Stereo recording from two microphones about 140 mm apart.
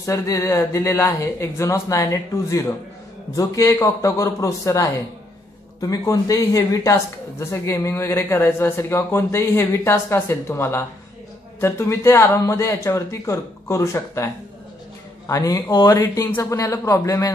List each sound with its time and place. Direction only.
0.0 s speech: 20° left (ahead or behind)